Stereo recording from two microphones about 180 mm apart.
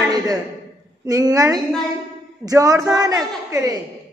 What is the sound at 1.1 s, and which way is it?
A woman's voice, 20° right (ahead or behind).